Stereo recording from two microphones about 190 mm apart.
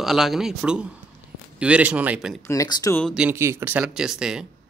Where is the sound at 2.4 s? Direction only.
15° left (ahead or behind).